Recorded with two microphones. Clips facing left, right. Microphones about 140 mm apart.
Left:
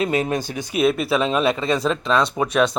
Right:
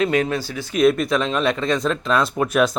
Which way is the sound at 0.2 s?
20° left (ahead or behind).